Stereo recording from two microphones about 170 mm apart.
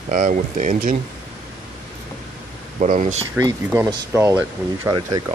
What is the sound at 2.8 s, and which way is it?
Speech, 45° right (ahead or behind).